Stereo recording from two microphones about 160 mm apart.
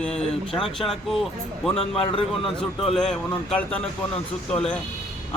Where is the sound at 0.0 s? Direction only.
5° left (ahead or behind).